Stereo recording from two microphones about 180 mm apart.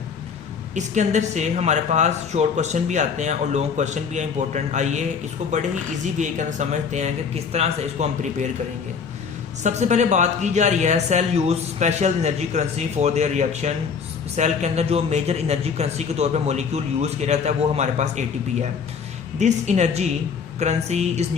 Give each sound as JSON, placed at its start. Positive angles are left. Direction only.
{"t": 0.7, "sound": "speech", "side_deg": -40}
{"t": 9.6, "sound": "speech", "side_deg": -40}